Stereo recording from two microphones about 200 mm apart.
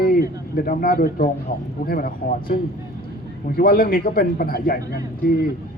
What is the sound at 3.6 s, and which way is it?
A man's voice, 45° left (ahead or behind).